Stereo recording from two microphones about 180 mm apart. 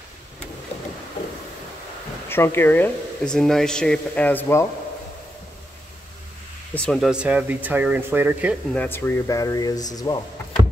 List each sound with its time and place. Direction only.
2.2 s speech: 10° left (ahead or behind)
6.7 s speech: 5° left (ahead or behind)
8.7 s speech: 10° left (ahead or behind)